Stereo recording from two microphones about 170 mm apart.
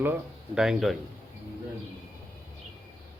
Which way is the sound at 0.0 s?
10° right (ahead or behind).